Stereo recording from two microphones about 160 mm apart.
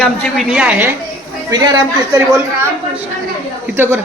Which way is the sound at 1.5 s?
25° right (ahead or behind).